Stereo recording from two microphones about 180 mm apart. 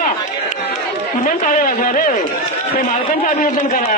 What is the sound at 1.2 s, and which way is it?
A man's voice, 45° left (ahead or behind).